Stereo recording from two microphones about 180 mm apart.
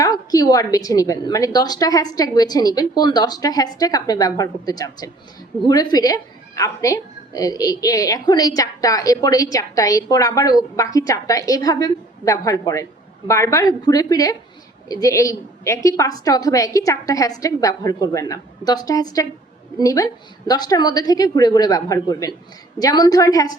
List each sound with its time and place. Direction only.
0.0 s a woman's voice: 20° left (ahead or behind)